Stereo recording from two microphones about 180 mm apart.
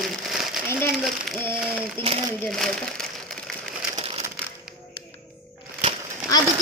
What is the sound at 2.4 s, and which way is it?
Crumpling, 5° left (ahead or behind).